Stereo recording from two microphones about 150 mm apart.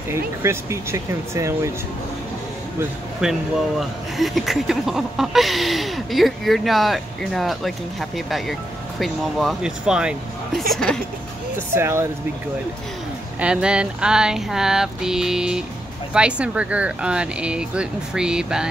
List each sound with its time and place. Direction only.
0.1 s speech: 20° right (ahead or behind)
3.2 s speech: centre (ahead or behind)
11.5 s speech: 15° right (ahead or behind)
13.4 s speech: 5° right (ahead or behind)